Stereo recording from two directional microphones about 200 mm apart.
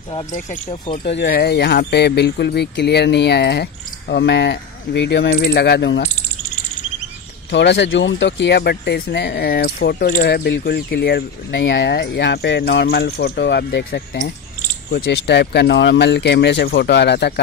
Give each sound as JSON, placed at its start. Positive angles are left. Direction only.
{"t": 0.3, "sound": "speech", "side_deg": 35}
{"t": 1.2, "sound": "speech", "side_deg": 50}
{"t": 7.5, "sound": "speech", "side_deg": 60}